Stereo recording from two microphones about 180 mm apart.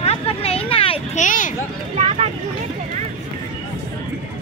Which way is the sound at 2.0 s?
40° right (ahead or behind).